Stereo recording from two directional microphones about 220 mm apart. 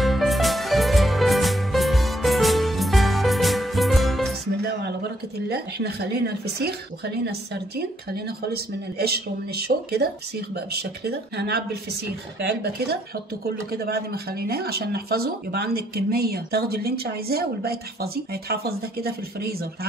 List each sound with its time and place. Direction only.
0.0 s music: centre (ahead or behind)
5.5 s speech: 45° right (ahead or behind)
8.9 s speech: 45° right (ahead or behind)